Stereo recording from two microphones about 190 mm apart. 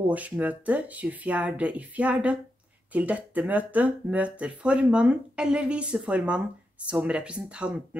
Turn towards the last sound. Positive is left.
turn(degrees=-5)  # may be behind; listen again after turning